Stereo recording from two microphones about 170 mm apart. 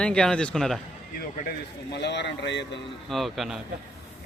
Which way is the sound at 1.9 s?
90° left.